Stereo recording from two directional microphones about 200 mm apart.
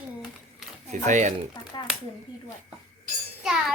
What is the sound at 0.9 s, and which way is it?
Speech, 35° right (ahead or behind).